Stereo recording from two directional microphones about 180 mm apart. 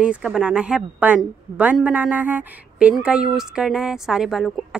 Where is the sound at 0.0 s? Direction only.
5° right (ahead or behind).